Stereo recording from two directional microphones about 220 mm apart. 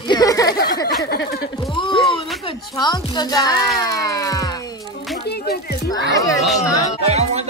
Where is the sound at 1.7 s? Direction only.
20° left (ahead or behind).